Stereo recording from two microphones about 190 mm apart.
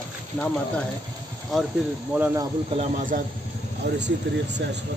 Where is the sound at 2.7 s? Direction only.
35° right (ahead or behind).